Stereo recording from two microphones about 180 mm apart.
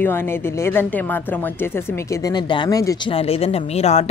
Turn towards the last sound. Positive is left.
turn(degrees=35)  # may be behind; listen again after turning